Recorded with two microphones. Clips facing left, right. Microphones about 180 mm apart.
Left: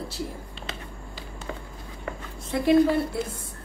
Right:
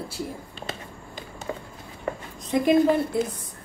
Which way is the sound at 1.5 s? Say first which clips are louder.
Right 4 dB; 30° right (ahead or behind).